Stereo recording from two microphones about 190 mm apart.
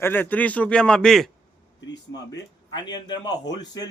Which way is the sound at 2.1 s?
20° left (ahead or behind).